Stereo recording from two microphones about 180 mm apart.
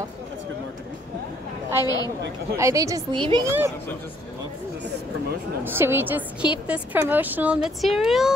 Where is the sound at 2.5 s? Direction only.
15° right (ahead or behind).